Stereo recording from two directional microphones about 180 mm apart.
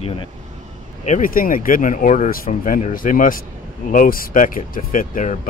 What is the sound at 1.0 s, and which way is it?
Speech, 45° left (ahead or behind).